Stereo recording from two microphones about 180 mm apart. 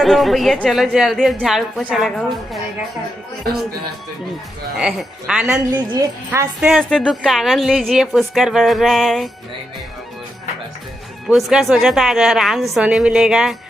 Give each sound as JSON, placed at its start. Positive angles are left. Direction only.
{"t": 0.0, "sound": "a woman's voice", "side_deg": 0}
{"t": 4.8, "sound": "a woman's voice", "side_deg": -5}
{"t": 5.7, "sound": "a woman's voice", "side_deg": -20}
{"t": 6.6, "sound": "a woman's voice", "side_deg": 0}
{"t": 11.3, "sound": "a woman's voice", "side_deg": 0}